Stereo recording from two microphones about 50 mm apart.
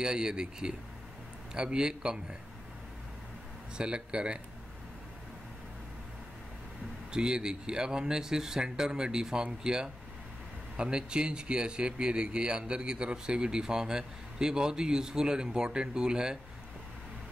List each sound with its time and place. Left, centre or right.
0.0 s speech: centre
3.7 s speech: centre
7.1 s speech: centre